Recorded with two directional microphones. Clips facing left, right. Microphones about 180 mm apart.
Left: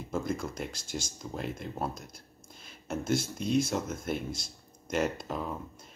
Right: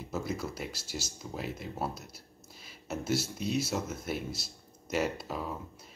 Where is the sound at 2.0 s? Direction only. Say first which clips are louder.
Left 1 dB; 50° left (ahead or behind).